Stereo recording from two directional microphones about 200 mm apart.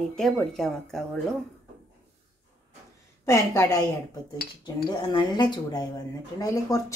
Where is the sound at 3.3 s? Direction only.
15° left (ahead or behind).